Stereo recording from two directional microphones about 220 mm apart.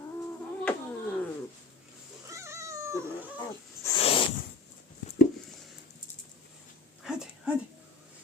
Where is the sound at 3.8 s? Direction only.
25° left (ahead or behind).